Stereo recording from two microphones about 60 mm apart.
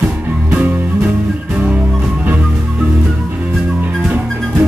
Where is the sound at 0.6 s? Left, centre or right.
Right.